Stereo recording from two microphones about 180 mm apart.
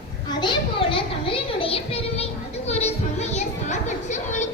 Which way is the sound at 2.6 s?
35° left (ahead or behind).